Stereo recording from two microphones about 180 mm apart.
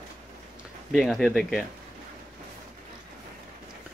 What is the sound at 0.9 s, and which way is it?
Speech, centre (ahead or behind).